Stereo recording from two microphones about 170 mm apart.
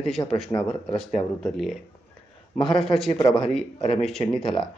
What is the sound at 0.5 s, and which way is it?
Speech, 30° left (ahead or behind).